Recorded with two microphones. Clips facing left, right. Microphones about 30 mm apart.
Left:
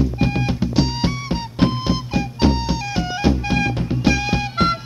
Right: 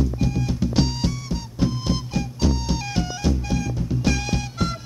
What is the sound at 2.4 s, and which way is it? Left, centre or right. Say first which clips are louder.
Music: left 6 dB; left.